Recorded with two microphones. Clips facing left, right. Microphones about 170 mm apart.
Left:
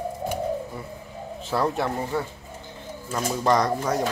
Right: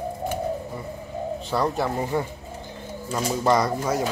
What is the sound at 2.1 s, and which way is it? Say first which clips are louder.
Speech: right 3 dB; 15° right (ahead or behind).